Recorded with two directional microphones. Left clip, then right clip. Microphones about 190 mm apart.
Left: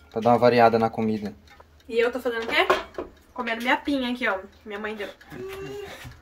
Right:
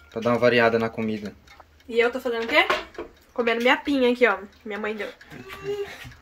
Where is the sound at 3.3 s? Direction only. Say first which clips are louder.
Right 4 dB; 30° right (ahead or behind).